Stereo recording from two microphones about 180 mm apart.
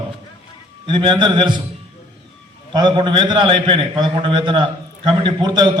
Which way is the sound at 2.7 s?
25° right (ahead or behind).